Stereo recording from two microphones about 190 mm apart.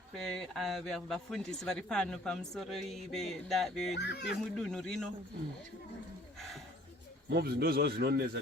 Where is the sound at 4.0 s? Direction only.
65° left (ahead or behind).